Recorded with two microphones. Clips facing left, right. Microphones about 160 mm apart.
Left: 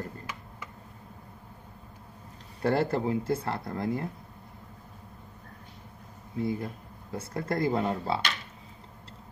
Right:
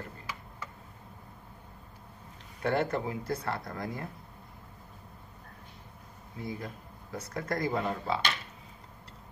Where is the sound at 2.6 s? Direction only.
35° left (ahead or behind).